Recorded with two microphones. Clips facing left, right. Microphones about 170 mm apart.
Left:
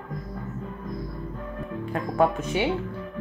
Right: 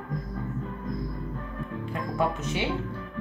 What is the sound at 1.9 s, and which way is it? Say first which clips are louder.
Music: left 5 dB; 50° left (ahead or behind).